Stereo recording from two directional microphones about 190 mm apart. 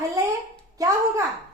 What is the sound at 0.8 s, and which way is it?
Speech, 15° right (ahead or behind).